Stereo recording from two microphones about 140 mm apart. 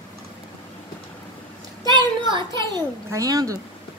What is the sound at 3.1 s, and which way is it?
Speech, 25° right (ahead or behind).